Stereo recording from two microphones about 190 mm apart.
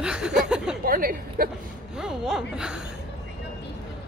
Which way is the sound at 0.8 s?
50° right (ahead or behind).